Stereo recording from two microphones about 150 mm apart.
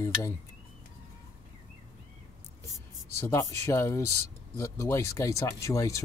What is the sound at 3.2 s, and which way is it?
Speech, 20° left (ahead or behind).